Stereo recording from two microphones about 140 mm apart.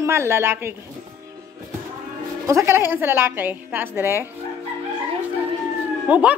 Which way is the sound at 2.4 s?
20° right (ahead or behind).